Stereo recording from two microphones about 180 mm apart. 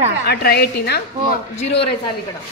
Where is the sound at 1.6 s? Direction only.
35° left (ahead or behind).